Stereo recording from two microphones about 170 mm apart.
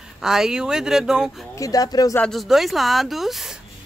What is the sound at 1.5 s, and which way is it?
Speech, 20° left (ahead or behind).